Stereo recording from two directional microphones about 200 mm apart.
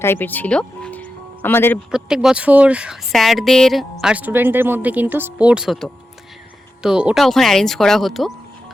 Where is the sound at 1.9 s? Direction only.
5° right (ahead or behind).